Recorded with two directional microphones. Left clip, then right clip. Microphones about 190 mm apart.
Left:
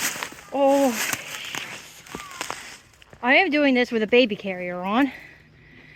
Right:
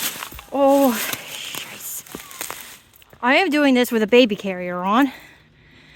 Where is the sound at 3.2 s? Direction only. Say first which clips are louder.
Right 2 dB; 40° right (ahead or behind).